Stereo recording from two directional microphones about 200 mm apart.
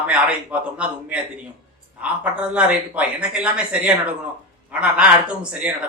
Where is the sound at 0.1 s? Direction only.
5° right (ahead or behind).